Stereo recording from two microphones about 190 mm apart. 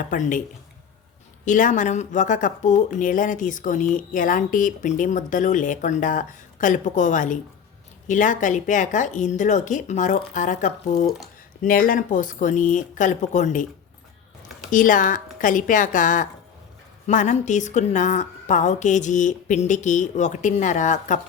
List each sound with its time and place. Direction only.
0.0 s speech: 45° left (ahead or behind)
1.5 s a woman's voice: 45° left (ahead or behind)
14.7 s a woman's voice: 45° left (ahead or behind)